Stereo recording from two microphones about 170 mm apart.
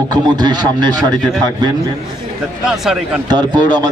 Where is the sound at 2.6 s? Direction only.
5° right (ahead or behind).